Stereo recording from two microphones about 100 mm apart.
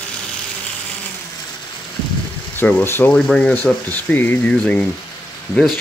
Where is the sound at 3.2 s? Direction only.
10° left (ahead or behind).